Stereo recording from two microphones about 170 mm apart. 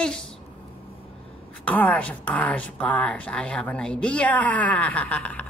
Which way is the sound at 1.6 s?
10° left (ahead or behind).